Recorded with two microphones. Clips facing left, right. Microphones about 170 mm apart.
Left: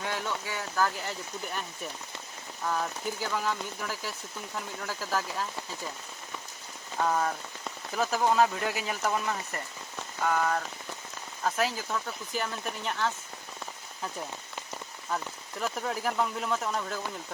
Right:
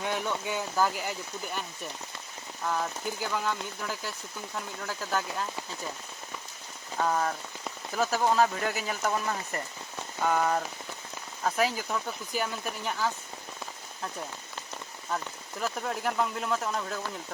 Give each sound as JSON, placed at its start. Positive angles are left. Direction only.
{"t": 0.0, "sound": "speech", "side_deg": -15}
{"t": 6.9, "sound": "speech", "side_deg": 0}
{"t": 10.2, "sound": "speech", "side_deg": -15}
{"t": 15.1, "sound": "speech", "side_deg": 0}